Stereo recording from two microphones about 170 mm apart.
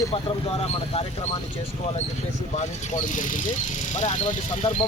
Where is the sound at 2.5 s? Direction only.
45° left (ahead or behind).